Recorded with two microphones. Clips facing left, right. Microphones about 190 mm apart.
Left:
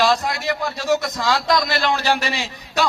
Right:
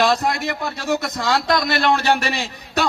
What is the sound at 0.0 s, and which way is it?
A man's voice, 50° right (ahead or behind).